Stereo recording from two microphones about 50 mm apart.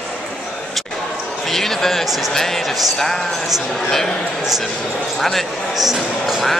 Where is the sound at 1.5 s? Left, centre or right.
Centre.